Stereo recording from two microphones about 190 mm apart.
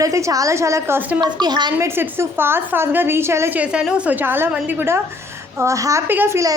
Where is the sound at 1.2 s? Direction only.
20° right (ahead or behind).